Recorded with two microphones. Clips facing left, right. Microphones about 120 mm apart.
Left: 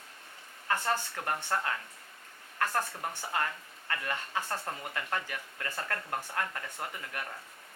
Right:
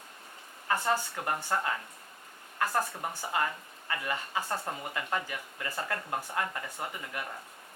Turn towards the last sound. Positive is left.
turn(degrees=-10)  # may be behind; listen again after turning